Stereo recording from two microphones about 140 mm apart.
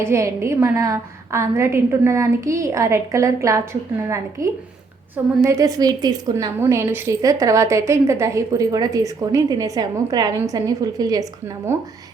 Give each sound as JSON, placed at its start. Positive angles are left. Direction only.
{"t": 0.0, "sound": "a woman's voice", "side_deg": -20}
{"t": 5.5, "sound": "a woman's voice", "side_deg": -25}